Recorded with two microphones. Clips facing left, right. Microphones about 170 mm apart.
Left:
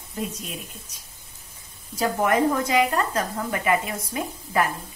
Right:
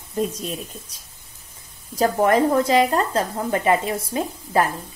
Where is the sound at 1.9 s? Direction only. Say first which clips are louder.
Right 4 dB; 35° right (ahead or behind).